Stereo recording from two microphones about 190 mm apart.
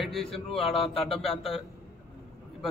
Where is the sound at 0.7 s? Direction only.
30° left (ahead or behind).